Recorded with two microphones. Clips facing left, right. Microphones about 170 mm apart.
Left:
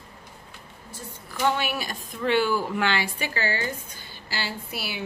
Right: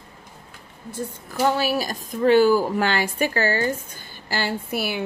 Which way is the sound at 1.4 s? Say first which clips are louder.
Right 5 dB; 40° right (ahead or behind).